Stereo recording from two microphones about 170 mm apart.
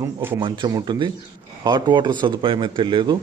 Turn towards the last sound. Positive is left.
turn(degrees=-30)  # may be behind; listen again after turning